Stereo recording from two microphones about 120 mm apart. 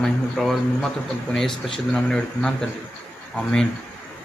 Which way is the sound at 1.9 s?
5° left (ahead or behind).